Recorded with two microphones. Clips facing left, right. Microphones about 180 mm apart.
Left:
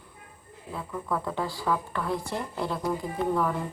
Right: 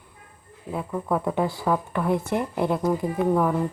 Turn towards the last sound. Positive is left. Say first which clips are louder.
# right 5 dB
turn(degrees=-20)  # may be behind; listen again after turning